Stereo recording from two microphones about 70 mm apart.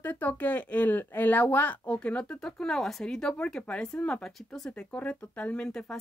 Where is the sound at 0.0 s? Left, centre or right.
Left.